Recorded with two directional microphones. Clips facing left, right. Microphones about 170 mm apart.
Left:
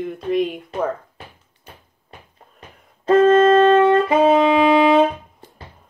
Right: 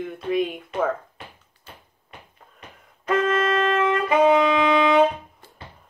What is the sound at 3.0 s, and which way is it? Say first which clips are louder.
Saxophone: left 9 dB; 30° left (ahead or behind).